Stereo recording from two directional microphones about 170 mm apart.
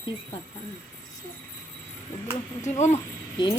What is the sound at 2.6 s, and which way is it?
Speech, 45° left (ahead or behind).